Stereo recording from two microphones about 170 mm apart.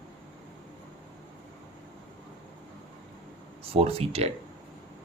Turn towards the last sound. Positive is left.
turn(degrees=-35)  # may be behind; listen again after turning